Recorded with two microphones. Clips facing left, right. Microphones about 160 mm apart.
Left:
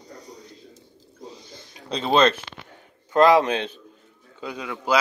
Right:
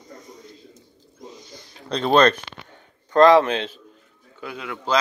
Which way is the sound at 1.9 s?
5° left (ahead or behind).